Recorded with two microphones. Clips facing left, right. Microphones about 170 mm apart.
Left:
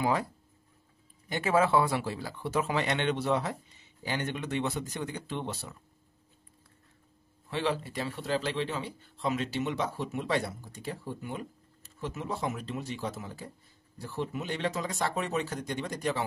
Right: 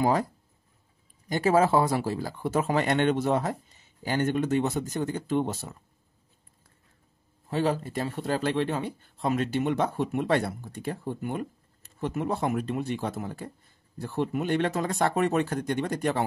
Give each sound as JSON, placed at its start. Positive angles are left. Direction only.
{"t": 0.0, "sound": "speech", "side_deg": -40}
{"t": 1.3, "sound": "speech", "side_deg": -40}
{"t": 7.4, "sound": "speech", "side_deg": -40}